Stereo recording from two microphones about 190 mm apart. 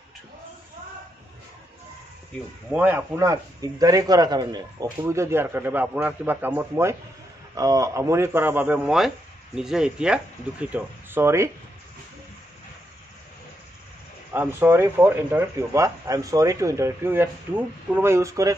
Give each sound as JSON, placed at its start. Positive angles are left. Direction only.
{"t": 2.7, "sound": "a man's voice", "side_deg": -10}
{"t": 14.3, "sound": "speech", "side_deg": -10}